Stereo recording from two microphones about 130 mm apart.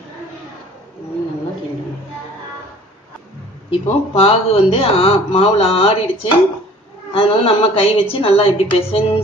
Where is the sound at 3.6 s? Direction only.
50° left (ahead or behind).